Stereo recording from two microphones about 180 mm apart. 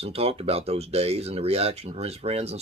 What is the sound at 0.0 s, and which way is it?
Speech, 35° right (ahead or behind).